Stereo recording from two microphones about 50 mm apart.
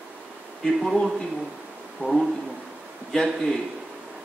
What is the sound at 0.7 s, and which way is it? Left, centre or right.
Speech, centre.